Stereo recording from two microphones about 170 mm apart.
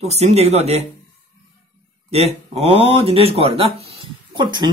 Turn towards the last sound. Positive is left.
turn(degrees=-25)  # may be behind; listen again after turning